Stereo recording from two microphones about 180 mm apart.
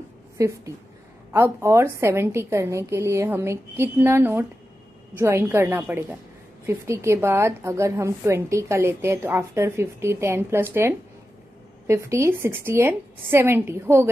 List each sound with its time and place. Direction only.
0.4 s a woman's voice: 20° right (ahead or behind)